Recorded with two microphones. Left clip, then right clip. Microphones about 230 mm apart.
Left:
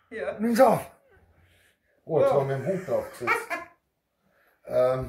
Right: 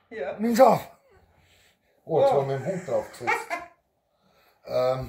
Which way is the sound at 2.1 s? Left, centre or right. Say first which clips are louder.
Right 1 dB; centre.